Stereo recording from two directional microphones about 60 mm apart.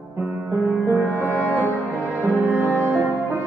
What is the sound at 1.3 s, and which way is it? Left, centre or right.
Music, left.